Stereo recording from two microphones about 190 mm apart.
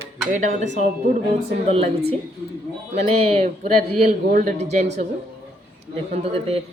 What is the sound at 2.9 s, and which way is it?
A man's voice, 35° right (ahead or behind).